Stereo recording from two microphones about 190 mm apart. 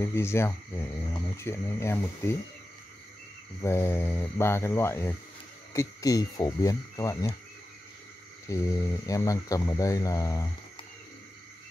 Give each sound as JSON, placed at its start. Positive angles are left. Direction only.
{"t": 0.0, "sound": "speech", "side_deg": 15}
{"t": 3.6, "sound": "speech", "side_deg": 15}
{"t": 8.5, "sound": "speech", "side_deg": 15}